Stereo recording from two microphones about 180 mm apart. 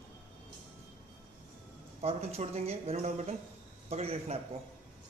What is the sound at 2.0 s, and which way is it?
Speech, 35° right (ahead or behind).